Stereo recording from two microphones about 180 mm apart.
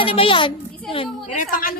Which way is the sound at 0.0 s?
30° left (ahead or behind).